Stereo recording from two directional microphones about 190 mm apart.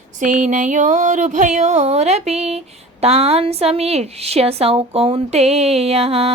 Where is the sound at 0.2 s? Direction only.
40° right (ahead or behind).